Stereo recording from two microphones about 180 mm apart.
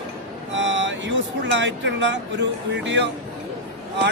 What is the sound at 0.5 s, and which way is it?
Speech, 90° right.